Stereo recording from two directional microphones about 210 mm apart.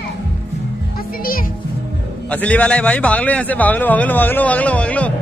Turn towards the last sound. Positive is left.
turn(degrees=5)  # may be behind; listen again after turning